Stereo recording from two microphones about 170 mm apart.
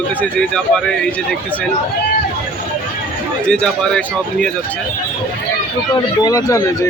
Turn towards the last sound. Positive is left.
turn(degrees=20)  # may be behind; listen again after turning